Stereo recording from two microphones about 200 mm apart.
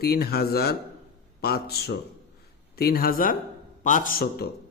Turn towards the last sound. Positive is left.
turn(degrees=50)  # may be behind; listen again after turning